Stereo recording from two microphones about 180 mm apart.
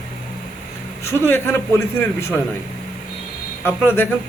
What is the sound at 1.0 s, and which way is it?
A man's voice, 10° left (ahead or behind).